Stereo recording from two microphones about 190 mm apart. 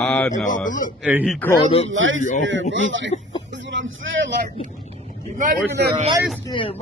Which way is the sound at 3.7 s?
75° right (ahead or behind).